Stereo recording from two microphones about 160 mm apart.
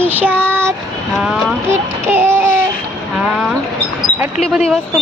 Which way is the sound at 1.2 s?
5° right (ahead or behind).